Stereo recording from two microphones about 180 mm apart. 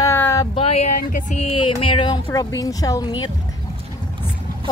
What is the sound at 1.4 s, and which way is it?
Speech, 30° left (ahead or behind).